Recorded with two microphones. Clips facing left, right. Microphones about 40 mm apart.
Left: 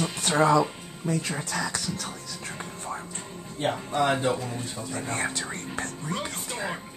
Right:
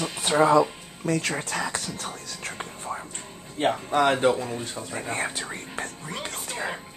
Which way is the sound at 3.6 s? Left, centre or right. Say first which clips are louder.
Right 4 dB; right.